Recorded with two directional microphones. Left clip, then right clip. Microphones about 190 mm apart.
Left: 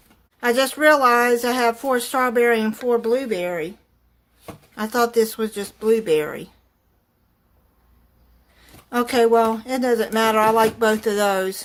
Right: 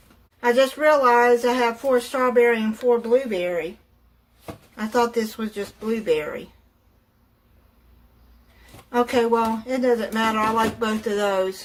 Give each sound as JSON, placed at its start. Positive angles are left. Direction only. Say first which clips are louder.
{"t": 0.3, "sound": "speech", "louder": "right 1 dB", "side_deg": 45}
{"t": 4.7, "sound": "speech", "louder": "left 2 dB", "side_deg": 45}
{"t": 8.9, "sound": "speech", "louder": "left 3 dB", "side_deg": 50}